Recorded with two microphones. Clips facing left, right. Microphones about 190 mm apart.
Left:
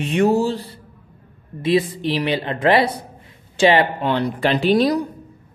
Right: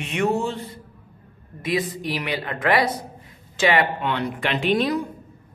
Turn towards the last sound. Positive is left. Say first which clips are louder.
# left 5 dB
turn(degrees=35)  # may be behind; listen again after turning